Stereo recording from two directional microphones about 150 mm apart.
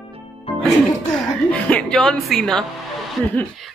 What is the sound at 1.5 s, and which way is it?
A woman's voice, 10° left (ahead or behind).